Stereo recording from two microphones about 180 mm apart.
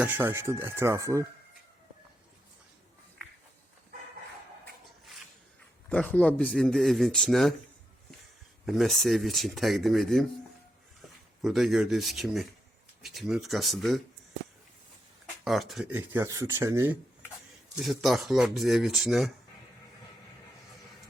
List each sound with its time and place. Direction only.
0.0 s speech: 10° right (ahead or behind)
5.9 s speech: 5° left (ahead or behind)
8.6 s speech: centre (ahead or behind)
11.4 s speech: centre (ahead or behind)
15.4 s speech: centre (ahead or behind)
15.9 s speech: 15° right (ahead or behind)
17.7 s speech: centre (ahead or behind)